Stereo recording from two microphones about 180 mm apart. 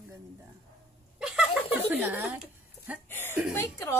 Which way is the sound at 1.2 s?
5° right (ahead or behind).